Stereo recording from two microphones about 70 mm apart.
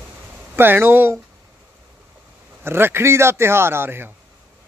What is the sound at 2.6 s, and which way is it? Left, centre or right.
Speech, right.